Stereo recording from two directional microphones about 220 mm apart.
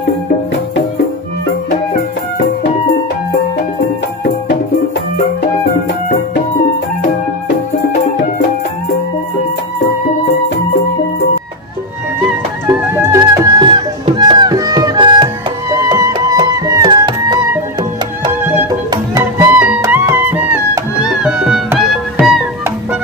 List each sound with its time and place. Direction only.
13.1 s music: 20° right (ahead or behind)
19.5 s music: 5° right (ahead or behind)